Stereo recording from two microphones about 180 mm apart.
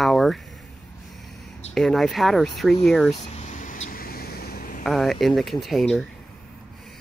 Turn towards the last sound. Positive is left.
turn(degrees=0)  # may be behind; listen again after turning